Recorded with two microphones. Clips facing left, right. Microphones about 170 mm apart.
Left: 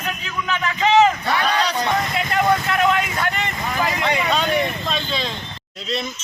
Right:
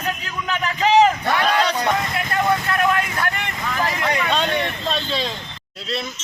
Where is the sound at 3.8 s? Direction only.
10° left (ahead or behind).